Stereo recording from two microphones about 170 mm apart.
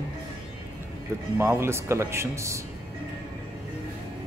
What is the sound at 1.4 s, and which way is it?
Speech, 15° right (ahead or behind).